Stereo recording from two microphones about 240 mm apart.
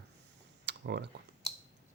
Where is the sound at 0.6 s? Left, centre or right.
Right.